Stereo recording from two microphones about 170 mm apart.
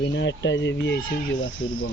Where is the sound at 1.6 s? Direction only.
30° left (ahead or behind).